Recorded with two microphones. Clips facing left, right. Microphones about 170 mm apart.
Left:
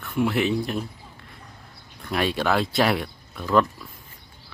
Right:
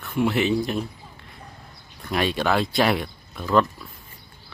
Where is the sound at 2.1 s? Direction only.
Centre (ahead or behind).